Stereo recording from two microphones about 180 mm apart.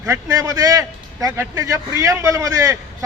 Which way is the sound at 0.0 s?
15° right (ahead or behind).